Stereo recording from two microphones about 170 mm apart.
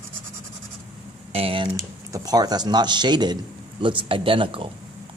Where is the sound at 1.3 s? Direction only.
35° right (ahead or behind).